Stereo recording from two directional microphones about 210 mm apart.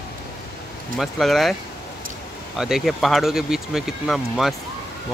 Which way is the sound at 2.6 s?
Centre (ahead or behind).